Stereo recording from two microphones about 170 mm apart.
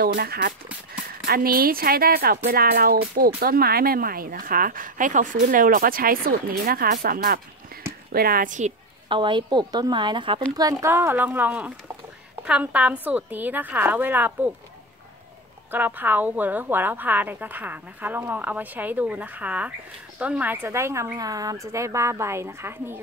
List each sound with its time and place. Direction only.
0.0 s speech: 65° right (ahead or behind)
7.7 s a sound: 60° right (ahead or behind)
8.1 s speech: 60° right (ahead or behind)
9.1 s a woman's voice: 30° right (ahead or behind); by 14.5 s 10° right (ahead or behind)
15.7 s a woman's voice: 10° right (ahead or behind)